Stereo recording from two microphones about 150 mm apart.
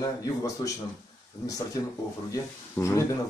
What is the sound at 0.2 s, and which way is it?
Speech, 20° left (ahead or behind).